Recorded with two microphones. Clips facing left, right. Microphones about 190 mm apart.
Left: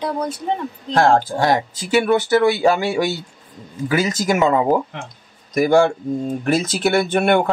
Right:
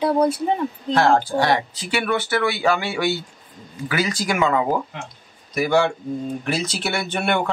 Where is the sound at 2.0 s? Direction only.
20° left (ahead or behind).